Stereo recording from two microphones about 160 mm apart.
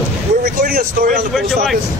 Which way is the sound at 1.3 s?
Centre (ahead or behind).